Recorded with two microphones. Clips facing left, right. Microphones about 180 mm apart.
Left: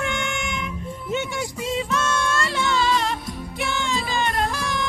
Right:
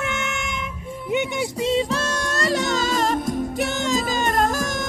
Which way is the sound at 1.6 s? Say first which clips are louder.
Right 4 dB; 30° right (ahead or behind).